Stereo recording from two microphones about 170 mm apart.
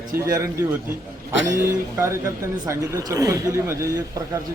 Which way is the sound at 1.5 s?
15° right (ahead or behind).